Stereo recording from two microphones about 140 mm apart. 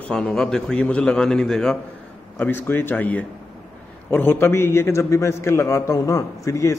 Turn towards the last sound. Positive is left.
turn(degrees=20)  # may be behind; listen again after turning